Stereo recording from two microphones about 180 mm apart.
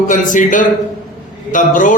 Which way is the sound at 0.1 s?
45° left (ahead or behind).